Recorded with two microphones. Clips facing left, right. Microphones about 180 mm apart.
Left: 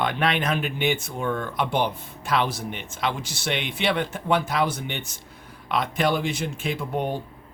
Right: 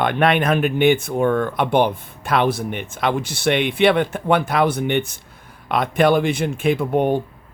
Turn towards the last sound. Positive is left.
turn(degrees=-60)  # may be behind; listen again after turning